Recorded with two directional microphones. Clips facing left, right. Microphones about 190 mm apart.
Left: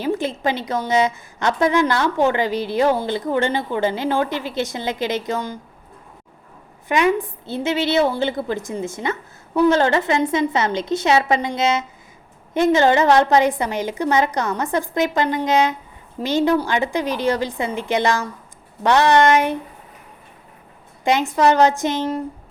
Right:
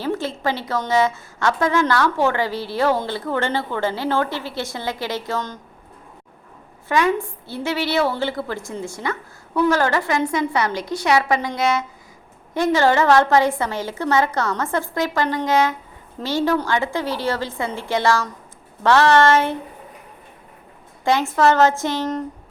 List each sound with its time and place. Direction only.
0.0 s a woman's voice: 15° left (ahead or behind)
6.8 s a woman's voice: 20° left (ahead or behind)
21.0 s a woman's voice: 20° left (ahead or behind)